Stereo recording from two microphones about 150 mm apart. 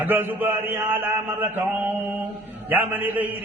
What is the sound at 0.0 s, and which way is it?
Mantra, 15° right (ahead or behind).